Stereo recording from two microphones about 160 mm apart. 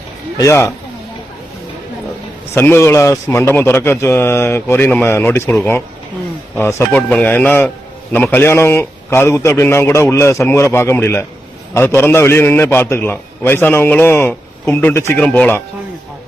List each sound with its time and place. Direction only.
0.3 s speech: 20° left (ahead or behind)
2.6 s a man's voice: 15° left (ahead or behind)